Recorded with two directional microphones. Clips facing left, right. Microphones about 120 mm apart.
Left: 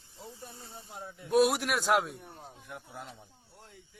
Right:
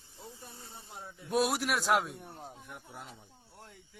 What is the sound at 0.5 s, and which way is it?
Hiss, 25° left (ahead or behind).